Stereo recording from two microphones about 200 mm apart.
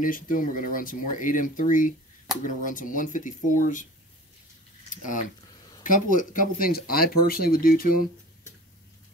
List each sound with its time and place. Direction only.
0.0 s speech: 40° left (ahead or behind)
4.8 s speech: 40° left (ahead or behind)